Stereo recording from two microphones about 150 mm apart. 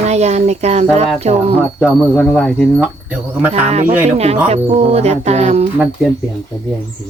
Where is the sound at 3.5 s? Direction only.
45° right (ahead or behind).